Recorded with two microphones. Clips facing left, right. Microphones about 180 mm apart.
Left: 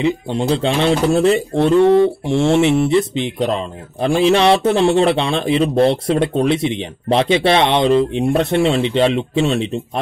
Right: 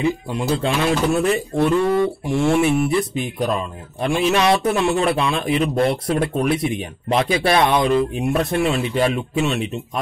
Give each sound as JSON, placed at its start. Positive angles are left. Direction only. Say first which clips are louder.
{"t": 0.0, "sound": "mantra", "louder": "left 3 dB", "side_deg": 30}